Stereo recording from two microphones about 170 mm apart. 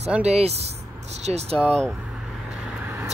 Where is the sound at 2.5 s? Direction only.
5° right (ahead or behind).